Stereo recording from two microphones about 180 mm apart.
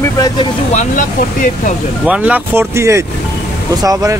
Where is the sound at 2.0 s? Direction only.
5° right (ahead or behind).